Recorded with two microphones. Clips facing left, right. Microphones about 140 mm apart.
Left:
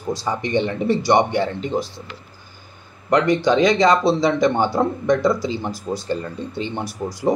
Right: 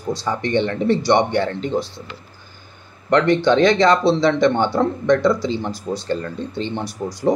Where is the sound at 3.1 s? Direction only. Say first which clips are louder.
Right 1 dB; 5° left (ahead or behind).